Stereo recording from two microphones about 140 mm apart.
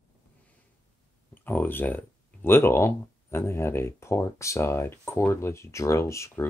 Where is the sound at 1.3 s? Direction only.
15° left (ahead or behind).